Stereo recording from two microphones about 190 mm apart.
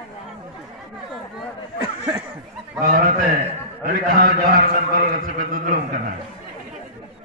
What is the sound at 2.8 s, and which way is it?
A man's voice, 50° right (ahead or behind).